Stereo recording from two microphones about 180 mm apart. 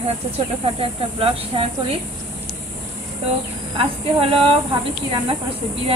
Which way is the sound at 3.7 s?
30° right (ahead or behind).